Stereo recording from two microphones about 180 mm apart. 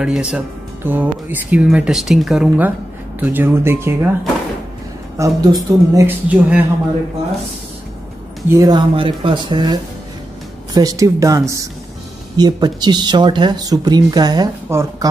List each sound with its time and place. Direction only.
0.0 s speech: 5° right (ahead or behind)
5.1 s speech: 20° right (ahead or behind)
8.5 s speech: 20° right (ahead or behind)